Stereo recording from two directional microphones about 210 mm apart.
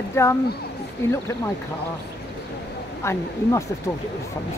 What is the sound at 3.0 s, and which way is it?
Speech, 15° left (ahead or behind).